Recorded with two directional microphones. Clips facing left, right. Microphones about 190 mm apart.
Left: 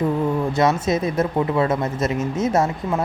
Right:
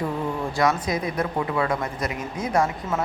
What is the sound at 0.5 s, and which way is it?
Speech, 25° left (ahead or behind).